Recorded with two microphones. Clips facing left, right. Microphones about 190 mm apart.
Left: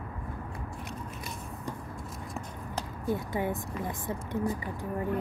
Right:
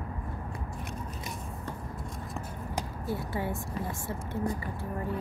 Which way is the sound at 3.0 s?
20° left (ahead or behind).